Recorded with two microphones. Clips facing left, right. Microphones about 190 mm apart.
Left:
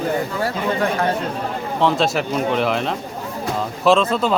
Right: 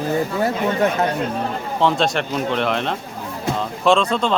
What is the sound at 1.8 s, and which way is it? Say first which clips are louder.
Speech: even; centre (ahead or behind).